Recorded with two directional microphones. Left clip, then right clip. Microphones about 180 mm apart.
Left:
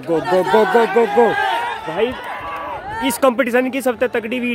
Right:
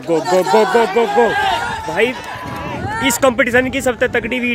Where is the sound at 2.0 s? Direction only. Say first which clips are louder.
Right 3 dB; 5° right (ahead or behind).